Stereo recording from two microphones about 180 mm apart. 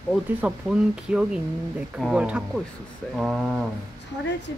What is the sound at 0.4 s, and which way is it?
Speech, 5° right (ahead or behind).